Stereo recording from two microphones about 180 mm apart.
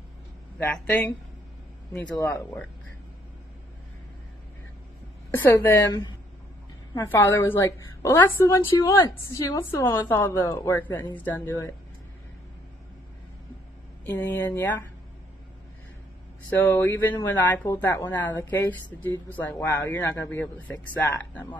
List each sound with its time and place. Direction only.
0.6 s speech: 10° left (ahead or behind)
2.1 s speech: 15° left (ahead or behind)
5.3 s speech: 10° left (ahead or behind)
14.0 s speech: 15° left (ahead or behind)
16.4 s speech: 10° left (ahead or behind)